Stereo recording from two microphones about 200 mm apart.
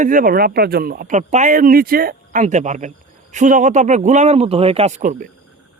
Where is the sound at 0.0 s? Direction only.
45° right (ahead or behind).